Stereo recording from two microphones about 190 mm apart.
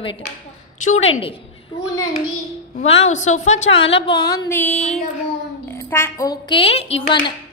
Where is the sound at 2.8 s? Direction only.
35° left (ahead or behind).